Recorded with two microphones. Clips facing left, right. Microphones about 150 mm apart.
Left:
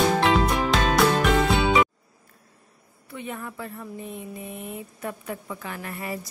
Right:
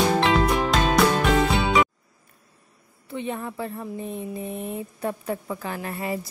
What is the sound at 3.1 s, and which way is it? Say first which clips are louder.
A woman's voice: right 5 dB; 30° right (ahead or behind).